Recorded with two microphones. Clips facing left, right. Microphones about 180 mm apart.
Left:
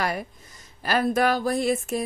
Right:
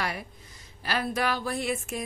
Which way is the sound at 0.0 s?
45° left (ahead or behind).